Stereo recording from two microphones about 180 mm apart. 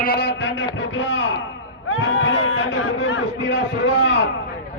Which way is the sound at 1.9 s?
90° left.